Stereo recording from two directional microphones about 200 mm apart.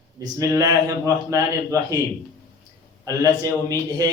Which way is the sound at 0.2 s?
15° right (ahead or behind).